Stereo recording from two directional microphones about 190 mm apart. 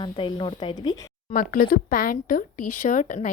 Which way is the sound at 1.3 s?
45° left (ahead or behind).